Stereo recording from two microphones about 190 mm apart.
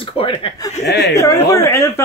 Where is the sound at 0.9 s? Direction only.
60° left (ahead or behind).